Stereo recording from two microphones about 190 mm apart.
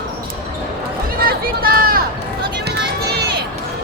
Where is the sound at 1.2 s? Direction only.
50° right (ahead or behind).